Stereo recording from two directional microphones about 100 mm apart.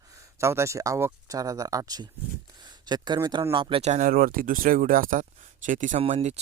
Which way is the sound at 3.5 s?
60° right (ahead or behind).